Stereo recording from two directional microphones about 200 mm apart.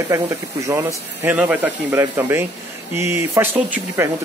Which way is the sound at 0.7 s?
10° right (ahead or behind).